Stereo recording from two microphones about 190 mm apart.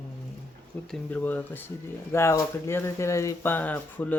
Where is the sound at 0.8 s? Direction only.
5° left (ahead or behind).